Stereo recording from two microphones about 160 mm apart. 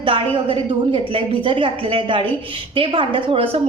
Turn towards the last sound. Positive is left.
turn(degrees=-35)  # may be behind; listen again after turning